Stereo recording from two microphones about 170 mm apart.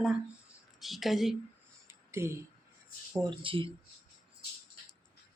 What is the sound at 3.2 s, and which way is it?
Speech, 30° right (ahead or behind).